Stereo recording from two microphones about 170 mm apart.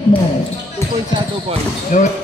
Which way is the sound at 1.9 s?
50° left (ahead or behind).